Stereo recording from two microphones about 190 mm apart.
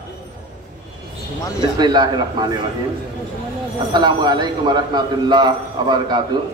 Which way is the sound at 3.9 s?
20° right (ahead or behind).